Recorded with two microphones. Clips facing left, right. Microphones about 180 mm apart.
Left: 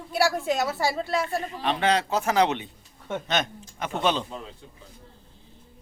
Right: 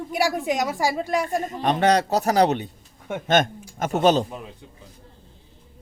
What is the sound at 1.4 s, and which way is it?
A man's voice, 45° right (ahead or behind).